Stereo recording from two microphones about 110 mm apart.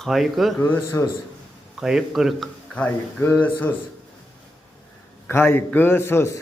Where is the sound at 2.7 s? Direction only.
15° left (ahead or behind).